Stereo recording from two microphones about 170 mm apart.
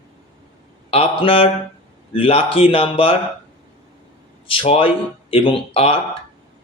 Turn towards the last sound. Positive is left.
turn(degrees=35)  # may be behind; listen again after turning